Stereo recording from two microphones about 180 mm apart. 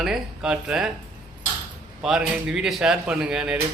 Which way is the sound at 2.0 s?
5° right (ahead or behind).